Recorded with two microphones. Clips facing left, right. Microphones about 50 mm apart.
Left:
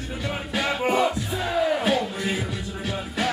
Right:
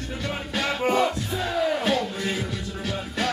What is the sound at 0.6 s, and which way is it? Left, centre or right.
Music, centre.